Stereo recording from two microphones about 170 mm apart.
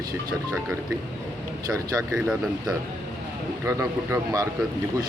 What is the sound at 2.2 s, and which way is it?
Speech, 5° right (ahead or behind).